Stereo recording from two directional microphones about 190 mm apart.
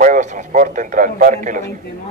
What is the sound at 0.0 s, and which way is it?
A man's voice, 40° right (ahead or behind).